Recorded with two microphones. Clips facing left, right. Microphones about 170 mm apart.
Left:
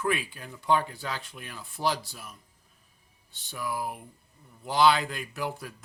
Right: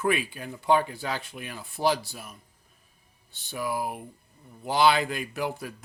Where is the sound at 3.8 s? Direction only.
15° right (ahead or behind).